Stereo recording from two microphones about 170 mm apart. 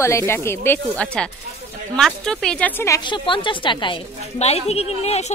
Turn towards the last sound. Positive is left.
turn(degrees=40)  # may be behind; listen again after turning